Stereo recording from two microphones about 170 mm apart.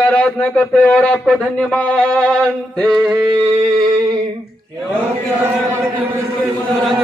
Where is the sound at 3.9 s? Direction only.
25° right (ahead or behind).